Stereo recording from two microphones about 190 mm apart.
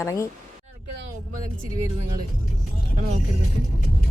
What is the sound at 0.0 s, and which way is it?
Speech, 15° left (ahead or behind).